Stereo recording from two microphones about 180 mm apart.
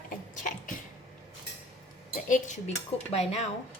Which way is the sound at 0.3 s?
45° left (ahead or behind).